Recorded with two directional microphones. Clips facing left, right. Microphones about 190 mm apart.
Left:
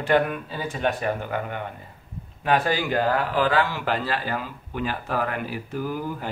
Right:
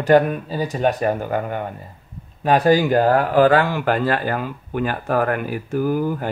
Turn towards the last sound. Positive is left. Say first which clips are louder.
# right 8 dB
turn(degrees=-50)  # may be behind; listen again after turning